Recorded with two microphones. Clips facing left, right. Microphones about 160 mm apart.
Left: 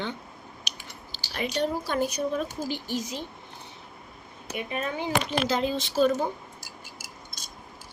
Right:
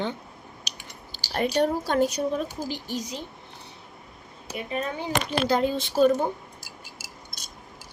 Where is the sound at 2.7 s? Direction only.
40° right (ahead or behind).